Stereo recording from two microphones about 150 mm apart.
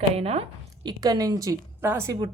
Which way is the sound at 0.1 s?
40° right (ahead or behind).